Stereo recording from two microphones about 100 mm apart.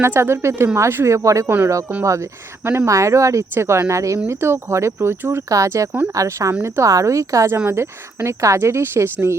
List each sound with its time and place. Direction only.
0.0 s a woman's voice: 25° right (ahead or behind)